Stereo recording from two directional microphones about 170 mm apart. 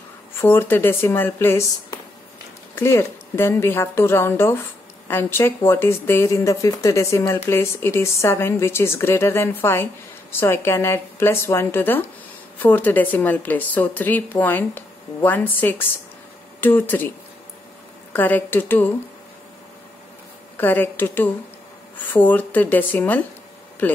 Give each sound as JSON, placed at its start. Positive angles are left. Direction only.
{"t": 0.4, "sound": "speech", "side_deg": 15}
{"t": 2.7, "sound": "speech", "side_deg": 15}
{"t": 18.1, "sound": "speech", "side_deg": 10}
{"t": 20.5, "sound": "speech", "side_deg": 10}